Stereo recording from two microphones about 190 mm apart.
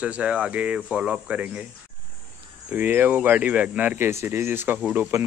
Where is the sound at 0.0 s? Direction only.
5° right (ahead or behind).